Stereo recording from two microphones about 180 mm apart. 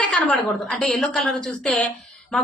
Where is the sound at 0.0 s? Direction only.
5° left (ahead or behind).